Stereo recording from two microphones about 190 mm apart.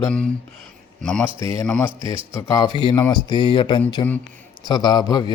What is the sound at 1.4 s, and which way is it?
Speech, 15° left (ahead or behind).